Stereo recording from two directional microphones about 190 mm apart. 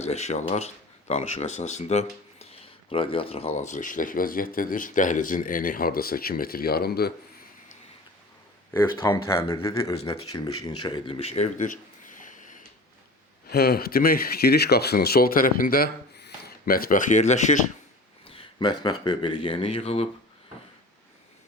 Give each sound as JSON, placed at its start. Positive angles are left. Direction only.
{"t": 0.0, "sound": "speech", "side_deg": 35}
{"t": 8.7, "sound": "speech", "side_deg": 10}
{"t": 9.7, "sound": "speech", "side_deg": 30}
{"t": 13.5, "sound": "speech", "side_deg": 55}
{"t": 18.3, "sound": "speech", "side_deg": 25}